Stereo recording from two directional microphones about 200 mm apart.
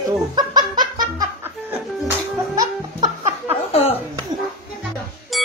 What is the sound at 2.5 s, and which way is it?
Music, 15° right (ahead or behind).